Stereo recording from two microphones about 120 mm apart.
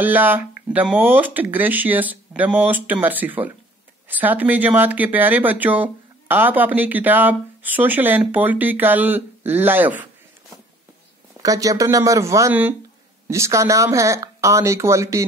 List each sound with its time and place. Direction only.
0.0 s speech: 15° right (ahead or behind)
11.4 s speech: 30° right (ahead or behind)